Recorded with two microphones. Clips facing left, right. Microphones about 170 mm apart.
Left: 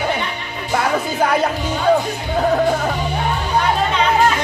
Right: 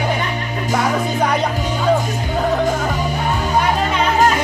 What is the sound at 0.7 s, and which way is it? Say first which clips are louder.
Music: even; 5° left (ahead or behind).